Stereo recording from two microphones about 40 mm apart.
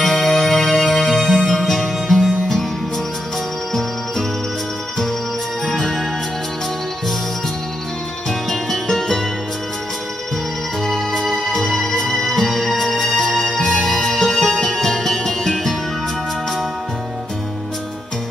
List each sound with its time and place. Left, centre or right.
0.0 s music: centre
5.7 s music: centre
8.3 s music: centre
10.9 s music: centre